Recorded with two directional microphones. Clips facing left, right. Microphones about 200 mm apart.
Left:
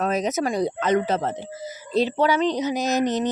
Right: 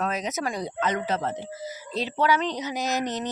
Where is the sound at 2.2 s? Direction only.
20° left (ahead or behind).